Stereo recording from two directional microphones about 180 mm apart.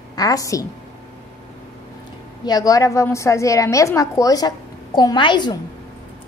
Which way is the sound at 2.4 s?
20° left (ahead or behind).